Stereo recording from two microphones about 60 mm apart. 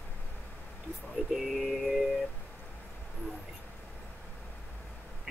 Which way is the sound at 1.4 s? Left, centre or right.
Centre.